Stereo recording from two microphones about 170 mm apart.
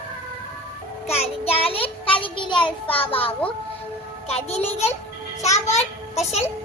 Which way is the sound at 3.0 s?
35° left (ahead or behind).